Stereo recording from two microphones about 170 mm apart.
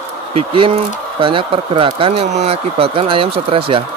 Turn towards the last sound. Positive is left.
turn(degrees=-35)  # may be behind; listen again after turning